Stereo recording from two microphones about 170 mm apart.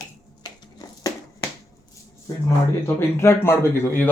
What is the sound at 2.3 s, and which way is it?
Speech, 15° left (ahead or behind).